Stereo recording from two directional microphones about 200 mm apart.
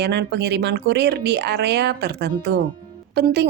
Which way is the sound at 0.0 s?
55° right (ahead or behind).